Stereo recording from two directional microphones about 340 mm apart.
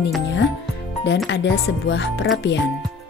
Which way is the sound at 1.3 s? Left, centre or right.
Left.